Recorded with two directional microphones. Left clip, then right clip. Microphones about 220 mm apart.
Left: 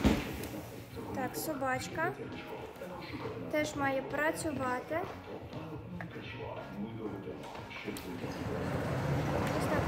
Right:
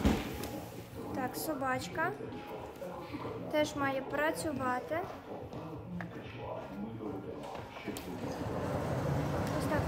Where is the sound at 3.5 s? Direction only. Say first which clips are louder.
Even; 5° right (ahead or behind).